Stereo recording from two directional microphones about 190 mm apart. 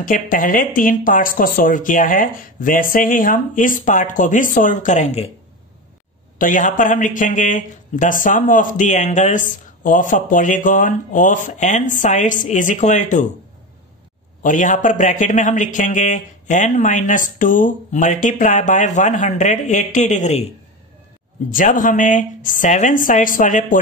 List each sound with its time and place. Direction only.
0.0 s speech: 45° left (ahead or behind)
6.3 s a man's voice: 45° left (ahead or behind)
14.4 s a man's voice: 45° left (ahead or behind)
21.5 s speech: 45° left (ahead or behind)